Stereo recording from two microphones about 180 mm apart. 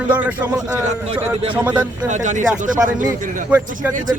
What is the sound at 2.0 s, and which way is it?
Speech, 40° right (ahead or behind).